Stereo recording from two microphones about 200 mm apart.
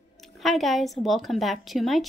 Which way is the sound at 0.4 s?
Centre (ahead or behind).